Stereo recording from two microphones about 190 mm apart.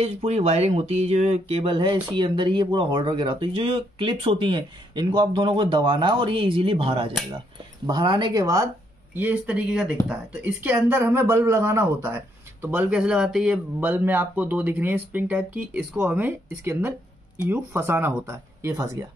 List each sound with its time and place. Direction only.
0.0 s speech: 35° right (ahead or behind); by 19.0 s 15° right (ahead or behind)